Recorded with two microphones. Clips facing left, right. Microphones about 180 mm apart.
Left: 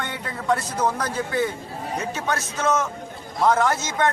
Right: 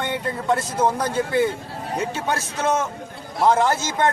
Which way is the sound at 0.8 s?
25° right (ahead or behind).